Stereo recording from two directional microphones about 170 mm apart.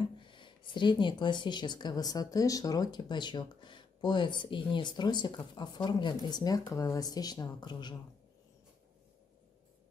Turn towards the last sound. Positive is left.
turn(degrees=25)  # may be behind; listen again after turning